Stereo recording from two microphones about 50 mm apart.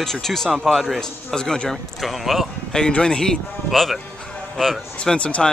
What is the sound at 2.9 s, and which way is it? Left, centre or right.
A man's voice, centre.